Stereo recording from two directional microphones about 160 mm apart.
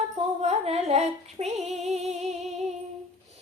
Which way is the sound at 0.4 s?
40° right (ahead or behind).